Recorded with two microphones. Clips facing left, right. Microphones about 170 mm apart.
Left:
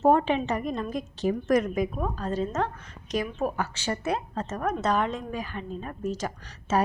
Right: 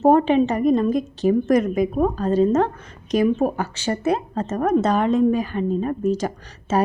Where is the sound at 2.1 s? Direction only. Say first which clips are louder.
Right 11 dB; 35° right (ahead or behind).